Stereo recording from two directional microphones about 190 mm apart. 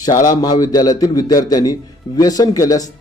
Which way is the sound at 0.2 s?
20° left (ahead or behind).